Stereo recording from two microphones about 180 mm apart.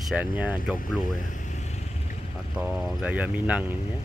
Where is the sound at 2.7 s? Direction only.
5° right (ahead or behind).